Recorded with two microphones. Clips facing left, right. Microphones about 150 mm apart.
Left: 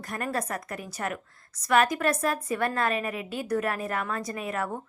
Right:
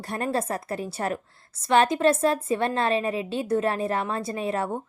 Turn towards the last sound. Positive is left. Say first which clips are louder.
# right 4 dB
turn(degrees=-30)  # may be behind; listen again after turning